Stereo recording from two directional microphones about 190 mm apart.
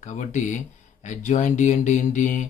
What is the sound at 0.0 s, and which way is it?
Speech, 40° left (ahead or behind).